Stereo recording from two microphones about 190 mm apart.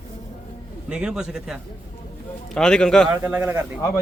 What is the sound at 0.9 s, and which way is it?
A man's voice, 5° right (ahead or behind).